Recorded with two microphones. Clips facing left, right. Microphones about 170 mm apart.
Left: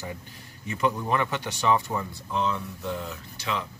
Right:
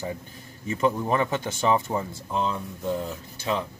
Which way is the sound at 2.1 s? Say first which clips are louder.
Right 1 dB; 35° right (ahead or behind).